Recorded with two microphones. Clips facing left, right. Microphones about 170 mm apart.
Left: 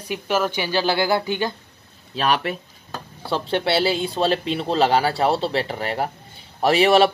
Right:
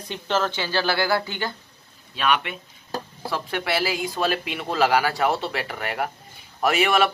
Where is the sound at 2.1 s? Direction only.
35° left (ahead or behind).